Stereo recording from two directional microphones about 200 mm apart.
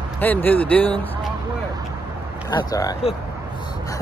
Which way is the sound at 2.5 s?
20° left (ahead or behind).